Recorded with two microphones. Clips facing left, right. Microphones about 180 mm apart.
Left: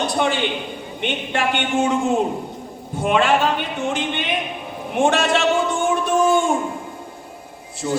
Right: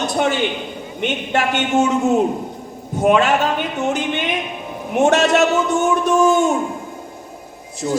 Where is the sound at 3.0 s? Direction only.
45° right (ahead or behind).